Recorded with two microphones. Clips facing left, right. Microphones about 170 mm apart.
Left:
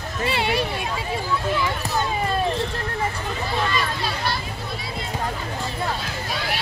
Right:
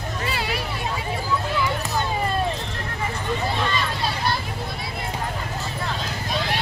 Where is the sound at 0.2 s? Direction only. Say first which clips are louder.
Left 7 dB; 25° left (ahead or behind).